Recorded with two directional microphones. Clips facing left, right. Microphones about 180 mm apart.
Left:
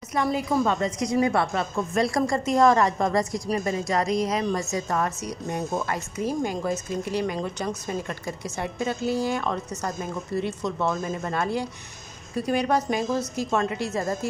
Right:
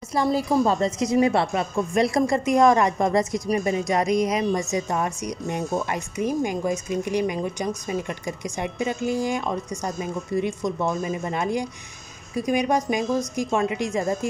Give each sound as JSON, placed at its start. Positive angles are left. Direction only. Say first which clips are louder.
{"t": 0.1, "sound": "a woman's voice", "louder": "right 3 dB", "side_deg": -35}